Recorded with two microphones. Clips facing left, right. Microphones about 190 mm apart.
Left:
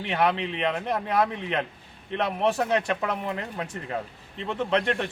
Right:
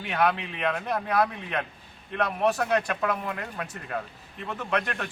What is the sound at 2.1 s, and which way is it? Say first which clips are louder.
A man's voice: left 1 dB; 25° left (ahead or behind).